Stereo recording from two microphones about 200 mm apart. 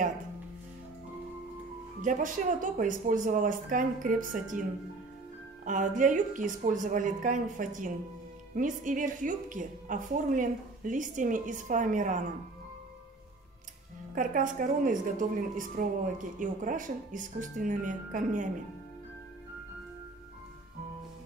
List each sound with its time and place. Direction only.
2.0 s a woman's voice: 40° right (ahead or behind)
5.7 s a woman's voice: 40° right (ahead or behind)
14.1 s a woman's voice: 40° right (ahead or behind)